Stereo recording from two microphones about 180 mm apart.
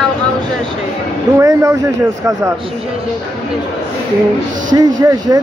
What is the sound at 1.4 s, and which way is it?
Speech, 15° right (ahead or behind).